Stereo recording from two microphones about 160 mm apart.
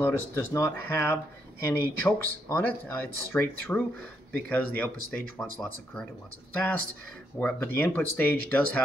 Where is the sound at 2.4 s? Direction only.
10° left (ahead or behind).